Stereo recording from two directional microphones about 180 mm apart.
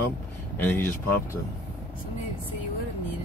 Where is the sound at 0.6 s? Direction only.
10° left (ahead or behind).